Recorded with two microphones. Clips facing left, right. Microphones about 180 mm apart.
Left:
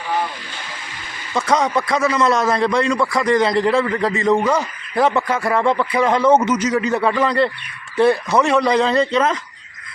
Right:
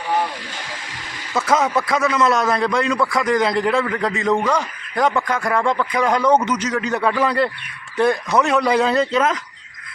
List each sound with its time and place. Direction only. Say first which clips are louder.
1.3 s a man's voice: even; 5° right (ahead or behind)